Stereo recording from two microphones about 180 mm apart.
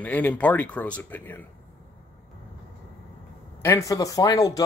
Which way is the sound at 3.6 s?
15° left (ahead or behind).